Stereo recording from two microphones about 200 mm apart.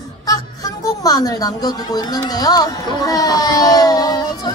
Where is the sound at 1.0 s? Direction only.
20° left (ahead or behind).